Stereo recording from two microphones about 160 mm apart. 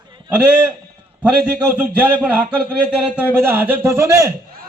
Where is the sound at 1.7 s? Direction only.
10° right (ahead or behind).